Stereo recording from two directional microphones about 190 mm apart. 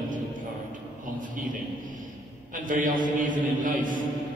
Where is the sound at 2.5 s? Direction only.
45° right (ahead or behind).